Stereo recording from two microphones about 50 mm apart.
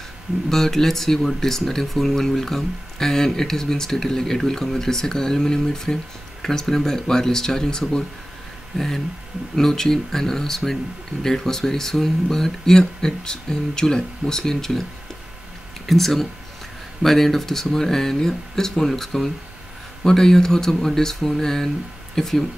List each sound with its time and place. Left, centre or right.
0.5 s speech: centre
15.9 s speech: centre